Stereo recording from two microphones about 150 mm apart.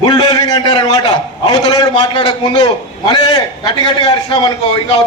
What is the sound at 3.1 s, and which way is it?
Speech, 30° left (ahead or behind).